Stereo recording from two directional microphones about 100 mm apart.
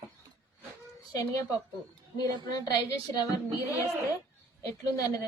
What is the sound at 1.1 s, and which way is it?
A woman's voice, 35° left (ahead or behind).